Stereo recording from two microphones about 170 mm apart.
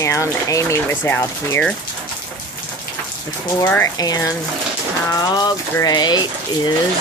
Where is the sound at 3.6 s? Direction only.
15° left (ahead or behind).